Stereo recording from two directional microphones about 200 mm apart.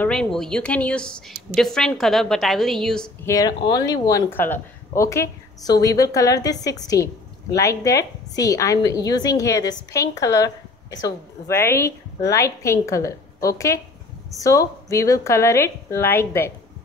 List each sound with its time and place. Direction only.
0.0 s speech: 5° left (ahead or behind)
3.3 s speech: 20° left (ahead or behind)